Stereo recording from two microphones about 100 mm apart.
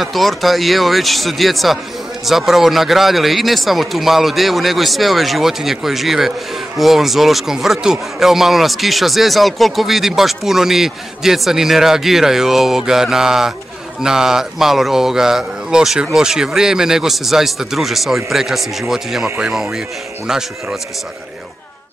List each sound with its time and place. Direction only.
0.0 s speech: centre (ahead or behind)
19.2 s speech: 15° right (ahead or behind)
19.5 s speech: 5° right (ahead or behind)